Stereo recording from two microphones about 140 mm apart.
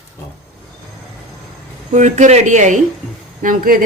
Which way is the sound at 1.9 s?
60° right (ahead or behind).